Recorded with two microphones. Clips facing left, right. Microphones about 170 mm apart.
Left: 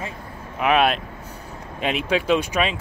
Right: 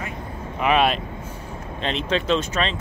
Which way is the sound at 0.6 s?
Centre (ahead or behind).